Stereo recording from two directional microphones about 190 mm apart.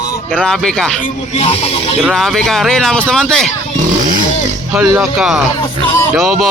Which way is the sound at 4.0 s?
45° right (ahead or behind).